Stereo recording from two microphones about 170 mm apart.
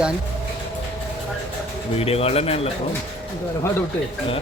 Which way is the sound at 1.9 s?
35° left (ahead or behind).